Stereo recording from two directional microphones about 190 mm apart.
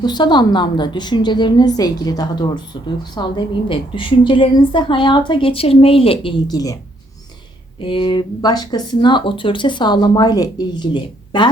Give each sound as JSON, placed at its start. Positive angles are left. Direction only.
{"t": 0.0, "sound": "speech", "side_deg": 20}
{"t": 7.8, "sound": "speech", "side_deg": 25}